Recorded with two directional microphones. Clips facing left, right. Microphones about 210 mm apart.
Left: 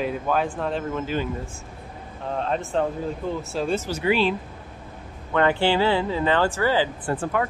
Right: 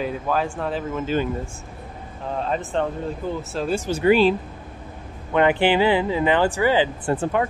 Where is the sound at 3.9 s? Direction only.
50° right (ahead or behind).